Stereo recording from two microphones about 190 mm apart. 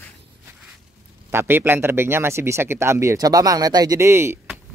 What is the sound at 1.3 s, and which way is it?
Speech, 15° right (ahead or behind).